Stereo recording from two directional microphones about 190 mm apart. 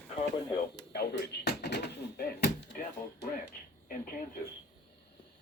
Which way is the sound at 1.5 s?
60° left (ahead or behind).